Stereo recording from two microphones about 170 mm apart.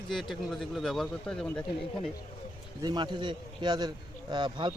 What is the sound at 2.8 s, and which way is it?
A man's voice, 25° right (ahead or behind).